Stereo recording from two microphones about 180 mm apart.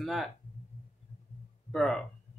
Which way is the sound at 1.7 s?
5° left (ahead or behind).